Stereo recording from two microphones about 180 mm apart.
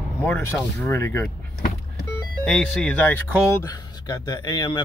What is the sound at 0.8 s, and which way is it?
Speech, 15° left (ahead or behind).